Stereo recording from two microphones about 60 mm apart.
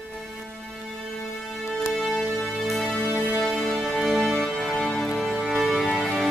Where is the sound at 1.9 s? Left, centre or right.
Centre.